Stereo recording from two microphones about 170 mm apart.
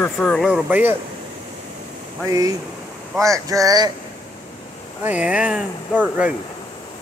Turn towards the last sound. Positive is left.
turn(degrees=-10)  # may be behind; listen again after turning